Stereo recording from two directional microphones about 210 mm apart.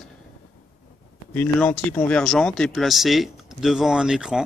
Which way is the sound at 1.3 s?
5° left (ahead or behind).